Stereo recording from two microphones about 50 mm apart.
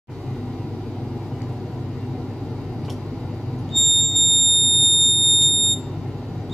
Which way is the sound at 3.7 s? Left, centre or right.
Centre.